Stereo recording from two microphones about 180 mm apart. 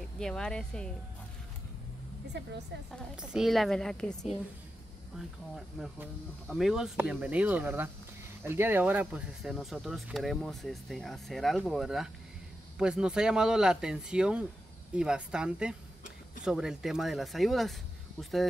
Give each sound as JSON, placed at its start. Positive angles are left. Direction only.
{"t": 0.2, "sound": "speech", "side_deg": 5}
{"t": 2.3, "sound": "a woman's voice", "side_deg": -70}
{"t": 3.2, "sound": "speech", "side_deg": 0}
{"t": 5.8, "sound": "speech", "side_deg": 0}